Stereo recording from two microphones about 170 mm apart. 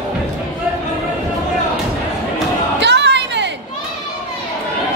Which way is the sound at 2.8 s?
90° right.